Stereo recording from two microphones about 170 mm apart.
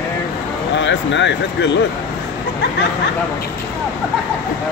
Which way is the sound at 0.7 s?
90° left.